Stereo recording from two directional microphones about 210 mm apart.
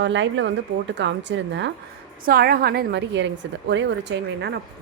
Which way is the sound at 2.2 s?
45° right (ahead or behind).